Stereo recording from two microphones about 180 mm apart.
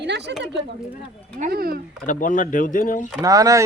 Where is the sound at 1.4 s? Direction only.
55° right (ahead or behind).